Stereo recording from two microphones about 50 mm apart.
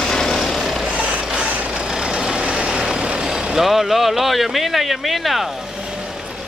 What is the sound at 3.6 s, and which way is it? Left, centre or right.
Speech, centre.